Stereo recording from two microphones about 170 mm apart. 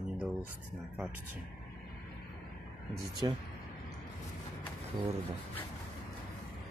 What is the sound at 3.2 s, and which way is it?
Speech, 25° right (ahead or behind).